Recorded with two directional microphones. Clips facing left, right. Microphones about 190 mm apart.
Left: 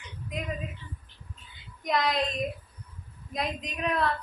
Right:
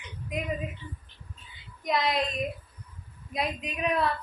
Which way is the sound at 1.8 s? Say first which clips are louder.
Even; 5° right (ahead or behind).